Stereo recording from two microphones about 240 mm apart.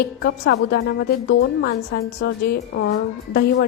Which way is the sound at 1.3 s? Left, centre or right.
Left.